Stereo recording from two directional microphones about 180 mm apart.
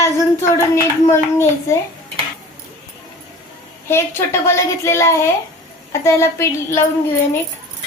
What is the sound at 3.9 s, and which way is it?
A woman's voice, 15° left (ahead or behind).